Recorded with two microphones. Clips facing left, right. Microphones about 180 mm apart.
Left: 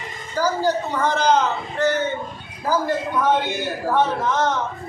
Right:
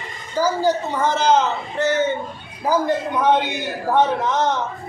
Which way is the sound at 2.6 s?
15° right (ahead or behind).